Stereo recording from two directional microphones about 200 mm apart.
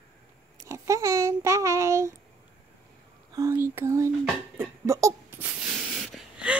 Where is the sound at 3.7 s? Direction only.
15° right (ahead or behind).